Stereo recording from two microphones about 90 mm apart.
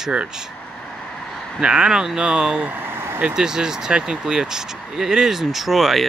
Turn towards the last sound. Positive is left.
turn(degrees=0)  # may be behind; listen again after turning